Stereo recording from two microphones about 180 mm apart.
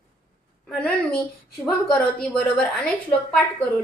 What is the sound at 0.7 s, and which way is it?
Speech, 5° left (ahead or behind).